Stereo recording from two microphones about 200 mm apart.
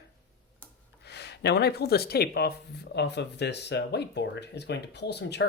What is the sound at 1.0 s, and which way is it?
Speech, 55° left (ahead or behind).